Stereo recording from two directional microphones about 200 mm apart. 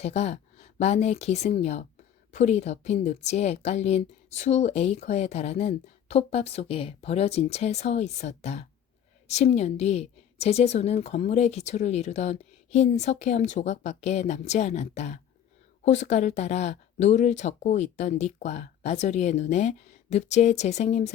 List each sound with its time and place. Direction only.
0.0 s speech: 30° left (ahead or behind)